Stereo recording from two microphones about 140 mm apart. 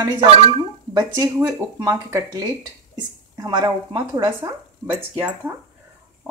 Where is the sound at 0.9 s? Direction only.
25° right (ahead or behind).